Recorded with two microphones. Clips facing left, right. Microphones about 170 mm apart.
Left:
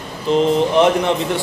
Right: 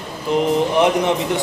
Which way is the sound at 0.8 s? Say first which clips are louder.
Left 2 dB; 20° right (ahead or behind).